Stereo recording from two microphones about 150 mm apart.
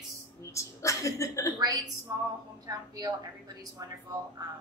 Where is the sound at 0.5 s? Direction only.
20° left (ahead or behind).